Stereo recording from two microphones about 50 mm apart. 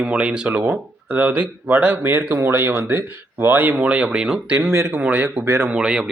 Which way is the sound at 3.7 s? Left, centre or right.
Right.